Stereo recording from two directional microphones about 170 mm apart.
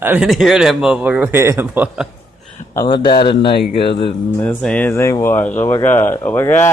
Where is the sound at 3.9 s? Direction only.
30° left (ahead or behind).